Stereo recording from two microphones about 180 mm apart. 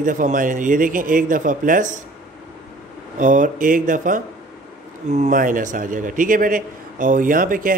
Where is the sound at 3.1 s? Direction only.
45° right (ahead or behind).